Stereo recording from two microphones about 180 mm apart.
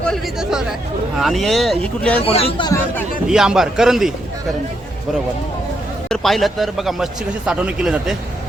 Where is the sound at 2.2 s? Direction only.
30° left (ahead or behind).